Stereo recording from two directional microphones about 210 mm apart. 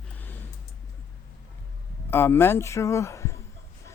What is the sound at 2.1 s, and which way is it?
A man's voice, 10° left (ahead or behind).